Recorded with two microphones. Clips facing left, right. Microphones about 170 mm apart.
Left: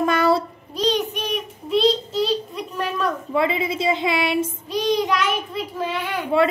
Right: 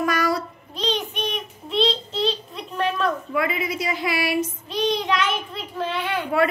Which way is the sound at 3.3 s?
25° left (ahead or behind).